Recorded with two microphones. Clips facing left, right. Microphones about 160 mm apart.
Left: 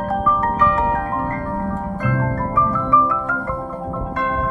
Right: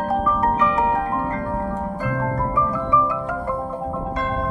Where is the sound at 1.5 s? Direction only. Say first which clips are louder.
Left 1 dB; 25° right (ahead or behind).